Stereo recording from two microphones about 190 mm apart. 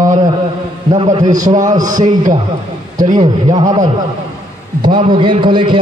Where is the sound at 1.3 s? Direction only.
40° right (ahead or behind).